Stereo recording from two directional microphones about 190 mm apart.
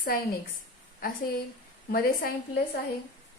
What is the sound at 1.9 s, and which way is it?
Speech, 50° left (ahead or behind).